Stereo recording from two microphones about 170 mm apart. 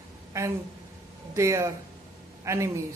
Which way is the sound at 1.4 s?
15° right (ahead or behind).